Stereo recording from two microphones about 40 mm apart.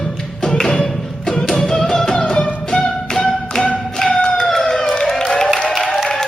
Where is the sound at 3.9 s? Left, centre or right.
Centre.